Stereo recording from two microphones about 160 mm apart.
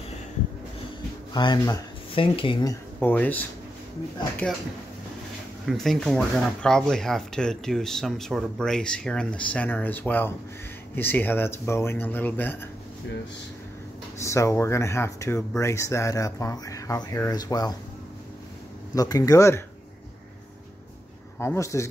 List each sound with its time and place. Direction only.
1.3 s speech: 25° left (ahead or behind)
3.0 s speech: 10° left (ahead or behind)
5.7 s speech: centre (ahead or behind)
14.2 s speech: 20° left (ahead or behind)
18.9 s speech: 20° left (ahead or behind)
21.4 s speech: 20° left (ahead or behind)